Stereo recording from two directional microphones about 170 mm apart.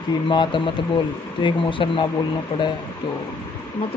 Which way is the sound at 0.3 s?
25° left (ahead or behind).